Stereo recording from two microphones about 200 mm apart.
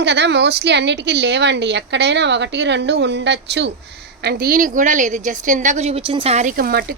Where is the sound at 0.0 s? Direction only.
60° right (ahead or behind).